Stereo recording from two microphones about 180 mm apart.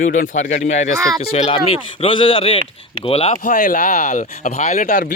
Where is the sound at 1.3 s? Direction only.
35° left (ahead or behind).